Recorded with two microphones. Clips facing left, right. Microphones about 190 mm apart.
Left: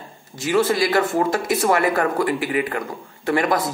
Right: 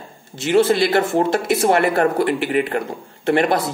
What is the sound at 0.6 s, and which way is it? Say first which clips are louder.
Speech: right 3 dB; 30° right (ahead or behind).